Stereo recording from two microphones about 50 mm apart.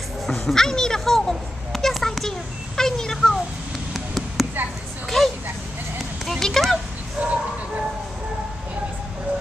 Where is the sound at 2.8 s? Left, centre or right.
Centre.